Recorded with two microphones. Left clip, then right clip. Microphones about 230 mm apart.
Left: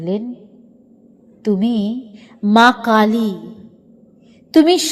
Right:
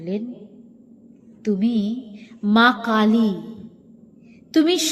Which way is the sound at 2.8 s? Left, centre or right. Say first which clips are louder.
Left 6 dB; left.